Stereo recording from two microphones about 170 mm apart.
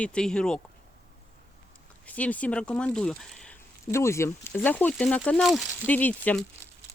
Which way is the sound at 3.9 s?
15° left (ahead or behind).